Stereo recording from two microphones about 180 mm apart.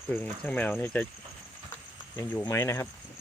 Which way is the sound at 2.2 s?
15° left (ahead or behind).